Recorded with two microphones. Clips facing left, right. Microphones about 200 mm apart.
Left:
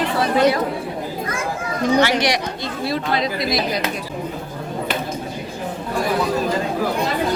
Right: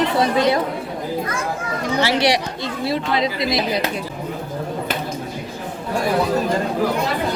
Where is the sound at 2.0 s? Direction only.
30° right (ahead or behind).